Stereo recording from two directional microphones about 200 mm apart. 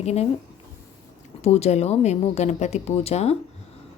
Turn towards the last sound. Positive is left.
turn(degrees=30)  # may be behind; listen again after turning